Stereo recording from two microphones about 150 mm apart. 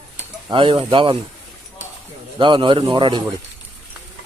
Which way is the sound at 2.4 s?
35° right (ahead or behind).